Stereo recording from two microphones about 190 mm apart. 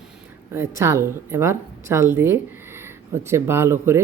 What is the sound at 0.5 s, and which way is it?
Speech, 15° right (ahead or behind).